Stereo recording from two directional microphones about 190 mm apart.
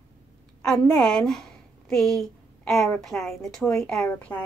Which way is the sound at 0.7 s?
Centre (ahead or behind).